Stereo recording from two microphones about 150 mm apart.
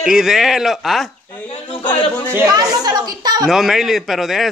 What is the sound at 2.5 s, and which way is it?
Speech, 25° right (ahead or behind).